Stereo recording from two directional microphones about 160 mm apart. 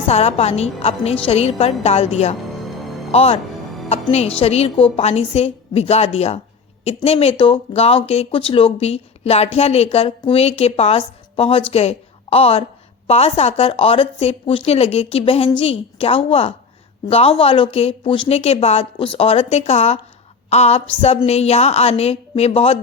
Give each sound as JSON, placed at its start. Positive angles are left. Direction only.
{"t": 0.1, "sound": "speech", "side_deg": 40}
{"t": 3.1, "sound": "a woman's voice", "side_deg": 40}